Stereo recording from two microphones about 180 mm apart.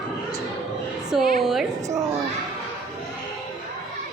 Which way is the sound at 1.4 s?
Centre (ahead or behind).